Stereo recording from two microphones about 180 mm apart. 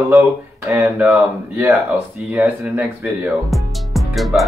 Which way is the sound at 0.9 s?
5° right (ahead or behind).